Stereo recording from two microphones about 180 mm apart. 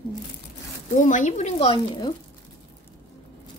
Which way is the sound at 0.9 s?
45° left (ahead or behind).